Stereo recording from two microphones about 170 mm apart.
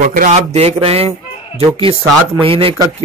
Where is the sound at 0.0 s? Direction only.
50° right (ahead or behind).